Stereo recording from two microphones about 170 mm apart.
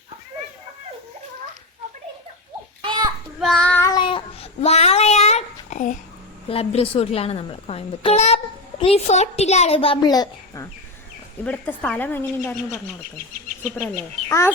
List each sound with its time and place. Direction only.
2.8 s children playing: 25° right (ahead or behind)
3.4 s child singing: 5° left (ahead or behind)
3.9 s a sound: 30° left (ahead or behind); by 6.0 s 45° left (ahead or behind)
6.5 s a woman's voice: 35° left (ahead or behind)
11.4 s speech: 10° left (ahead or behind)
14.3 s speech: 15° left (ahead or behind)